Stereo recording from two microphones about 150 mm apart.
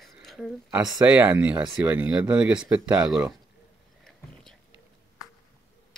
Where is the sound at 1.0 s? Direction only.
10° right (ahead or behind).